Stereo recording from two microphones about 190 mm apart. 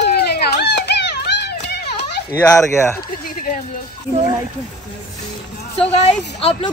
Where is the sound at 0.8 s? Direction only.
60° left (ahead or behind).